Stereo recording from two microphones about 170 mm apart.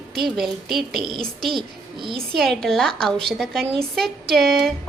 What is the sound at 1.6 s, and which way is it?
Speech, 30° right (ahead or behind).